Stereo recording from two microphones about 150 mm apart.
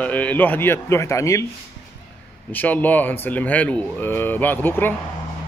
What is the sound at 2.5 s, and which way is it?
A man's voice, 10° left (ahead or behind).